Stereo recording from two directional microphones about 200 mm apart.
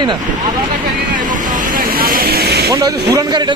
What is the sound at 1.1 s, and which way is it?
Vehicle, 40° right (ahead or behind).